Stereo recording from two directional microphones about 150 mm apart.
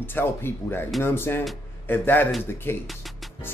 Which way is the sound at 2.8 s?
Centre (ahead or behind).